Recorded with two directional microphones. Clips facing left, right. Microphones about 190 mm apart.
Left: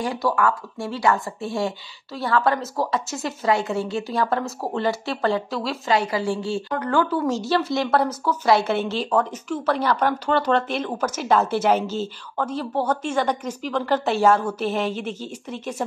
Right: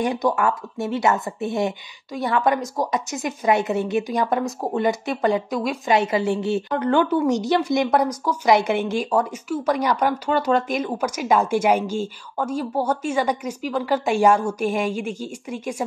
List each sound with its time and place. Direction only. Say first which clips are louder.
0.0 s a woman's voice: right 1 dB; 20° right (ahead or behind)